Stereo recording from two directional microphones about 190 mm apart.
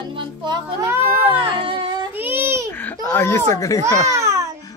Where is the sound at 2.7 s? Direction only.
10° left (ahead or behind).